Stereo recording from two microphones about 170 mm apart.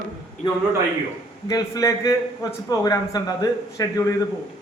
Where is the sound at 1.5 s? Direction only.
20° left (ahead or behind).